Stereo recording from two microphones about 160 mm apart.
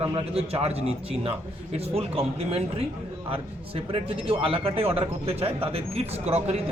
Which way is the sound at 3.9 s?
35° right (ahead or behind).